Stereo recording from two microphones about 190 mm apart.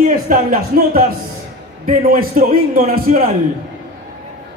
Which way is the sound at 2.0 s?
50° right (ahead or behind).